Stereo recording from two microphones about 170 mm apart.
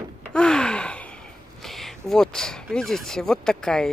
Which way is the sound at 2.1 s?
5° left (ahead or behind).